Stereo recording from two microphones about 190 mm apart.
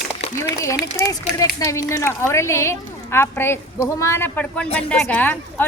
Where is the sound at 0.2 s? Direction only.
35° left (ahead or behind).